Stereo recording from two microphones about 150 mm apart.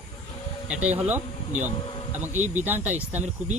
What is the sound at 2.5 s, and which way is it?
Speech, 10° right (ahead or behind).